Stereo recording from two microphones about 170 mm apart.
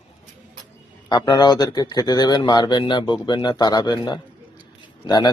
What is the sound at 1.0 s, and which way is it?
Speech, 25° left (ahead or behind).